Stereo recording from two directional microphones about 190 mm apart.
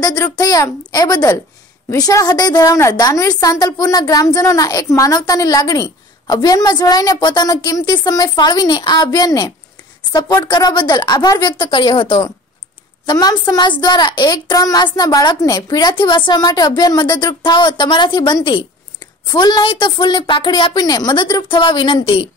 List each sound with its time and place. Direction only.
0.0 s a woman's voice: 20° left (ahead or behind)